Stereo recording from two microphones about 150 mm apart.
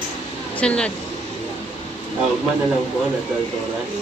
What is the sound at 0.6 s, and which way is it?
Speech, 5° left (ahead or behind).